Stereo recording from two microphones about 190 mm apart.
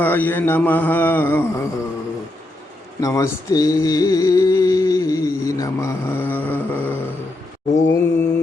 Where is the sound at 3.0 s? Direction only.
15° left (ahead or behind).